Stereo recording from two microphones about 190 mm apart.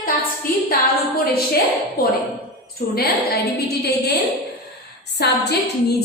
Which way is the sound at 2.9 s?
55° left (ahead or behind).